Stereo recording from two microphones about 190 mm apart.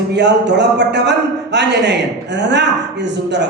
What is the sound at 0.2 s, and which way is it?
Speech, 65° right (ahead or behind).